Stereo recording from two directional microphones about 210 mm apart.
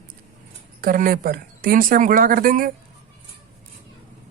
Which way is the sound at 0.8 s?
40° right (ahead or behind).